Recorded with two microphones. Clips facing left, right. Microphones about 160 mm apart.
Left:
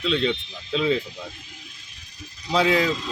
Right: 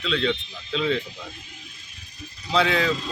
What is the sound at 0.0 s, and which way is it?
Speech, 5° left (ahead or behind).